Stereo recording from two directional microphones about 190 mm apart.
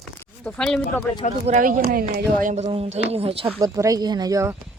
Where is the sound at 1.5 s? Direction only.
45° right (ahead or behind).